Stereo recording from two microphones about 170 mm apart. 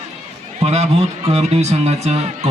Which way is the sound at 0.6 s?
35° right (ahead or behind).